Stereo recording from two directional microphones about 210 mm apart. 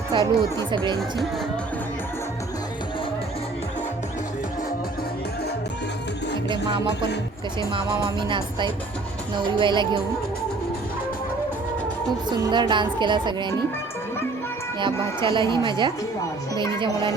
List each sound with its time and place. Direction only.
0.1 s a woman's voice: 20° right (ahead or behind)
0.9 s speech: centre (ahead or behind)
6.7 s a woman's voice: 25° right (ahead or behind)
8.3 s a woman's voice: 20° right (ahead or behind)
12.4 s a woman's voice: 20° right (ahead or behind)
15.2 s a woman's voice: 20° right (ahead or behind)